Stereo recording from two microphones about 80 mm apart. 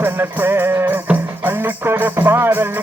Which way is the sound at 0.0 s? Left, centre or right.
Right.